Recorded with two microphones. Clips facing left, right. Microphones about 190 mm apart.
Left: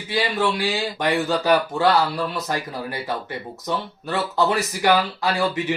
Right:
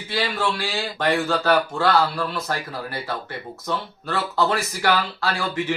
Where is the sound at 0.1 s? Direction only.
15° left (ahead or behind).